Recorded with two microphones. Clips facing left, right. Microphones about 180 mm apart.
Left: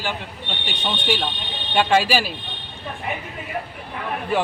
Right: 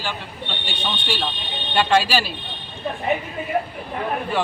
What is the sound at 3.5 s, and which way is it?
Speech, 40° right (ahead or behind).